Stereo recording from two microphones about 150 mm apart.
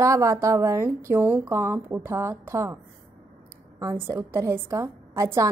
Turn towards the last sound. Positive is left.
turn(degrees=-20)  # may be behind; listen again after turning